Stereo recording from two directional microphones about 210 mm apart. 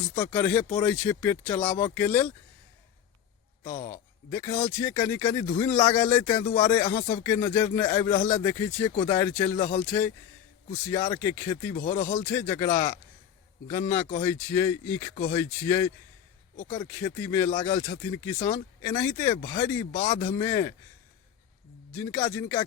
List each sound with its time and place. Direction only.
0.1 s speech: 10° left (ahead or behind)
3.8 s speech: 10° left (ahead or behind)
11.8 s speech: 35° left (ahead or behind)
12.2 s speech: 10° left (ahead or behind)
21.9 s speech: 10° left (ahead or behind)